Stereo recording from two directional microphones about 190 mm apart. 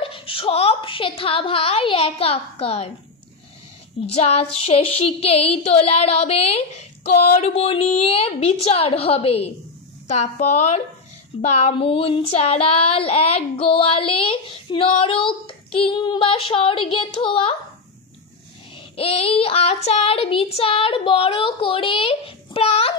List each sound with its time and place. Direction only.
0.0 s child singing: 30° left (ahead or behind)
4.1 s child singing: 30° left (ahead or behind)
18.8 s child singing: 30° left (ahead or behind)